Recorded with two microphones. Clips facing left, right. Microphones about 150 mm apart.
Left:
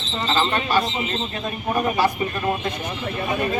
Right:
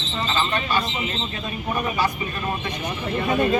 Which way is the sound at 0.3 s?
40° left (ahead or behind).